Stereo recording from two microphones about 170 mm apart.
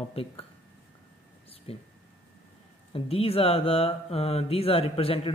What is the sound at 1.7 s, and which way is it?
Speech, 35° left (ahead or behind).